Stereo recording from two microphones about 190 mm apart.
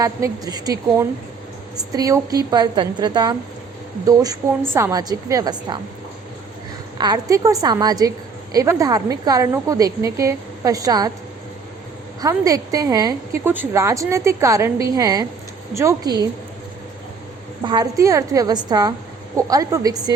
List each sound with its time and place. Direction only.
0.0 s a woman's voice: 20° right (ahead or behind)
7.0 s a woman's voice: 20° right (ahead or behind)
12.2 s a woman's voice: 20° right (ahead or behind)
17.6 s a woman's voice: 20° right (ahead or behind)